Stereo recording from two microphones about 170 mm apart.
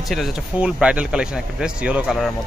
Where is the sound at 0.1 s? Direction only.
Centre (ahead or behind).